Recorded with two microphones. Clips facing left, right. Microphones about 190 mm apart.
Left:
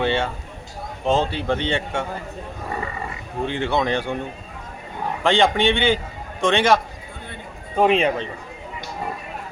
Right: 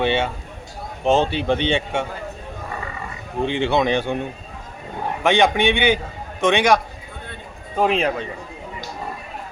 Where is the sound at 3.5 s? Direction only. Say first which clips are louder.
Right 3 dB; 25° right (ahead or behind).